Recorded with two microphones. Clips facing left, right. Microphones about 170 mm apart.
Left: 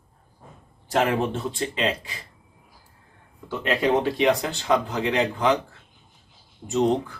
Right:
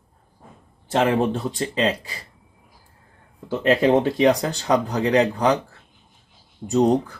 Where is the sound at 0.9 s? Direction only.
30° right (ahead or behind).